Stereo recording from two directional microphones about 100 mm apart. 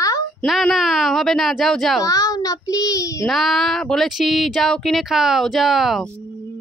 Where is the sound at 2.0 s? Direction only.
35° left (ahead or behind).